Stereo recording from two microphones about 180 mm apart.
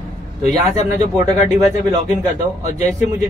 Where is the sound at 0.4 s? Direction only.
40° left (ahead or behind).